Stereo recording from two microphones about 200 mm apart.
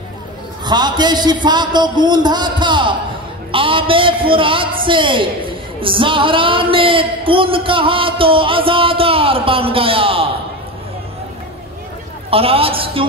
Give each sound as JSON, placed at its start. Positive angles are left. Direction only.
{"t": 0.7, "sound": "speech", "side_deg": -20}
{"t": 12.3, "sound": "speech", "side_deg": -30}